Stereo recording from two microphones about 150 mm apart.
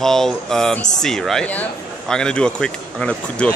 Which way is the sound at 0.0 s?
5° left (ahead or behind).